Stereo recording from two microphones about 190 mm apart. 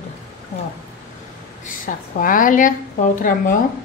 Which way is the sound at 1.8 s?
45° left (ahead or behind).